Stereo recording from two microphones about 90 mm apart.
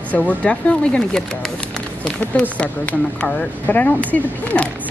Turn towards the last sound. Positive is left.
turn(degrees=15)  # may be behind; listen again after turning